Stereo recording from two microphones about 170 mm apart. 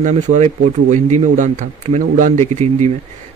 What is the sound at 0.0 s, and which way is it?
Speech, 40° right (ahead or behind).